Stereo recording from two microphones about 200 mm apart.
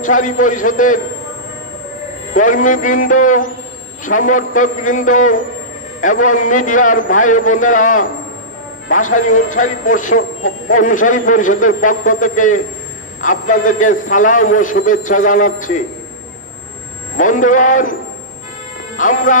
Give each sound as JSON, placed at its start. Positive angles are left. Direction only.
{"t": 0.0, "sound": "a man's voice", "side_deg": 40}
{"t": 2.3, "sound": "a man's voice", "side_deg": 40}
{"t": 17.2, "sound": "a man's voice", "side_deg": 40}
{"t": 18.9, "sound": "a man's voice", "side_deg": 40}